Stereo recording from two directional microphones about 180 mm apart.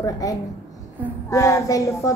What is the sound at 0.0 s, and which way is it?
A woman's voice, 20° left (ahead or behind).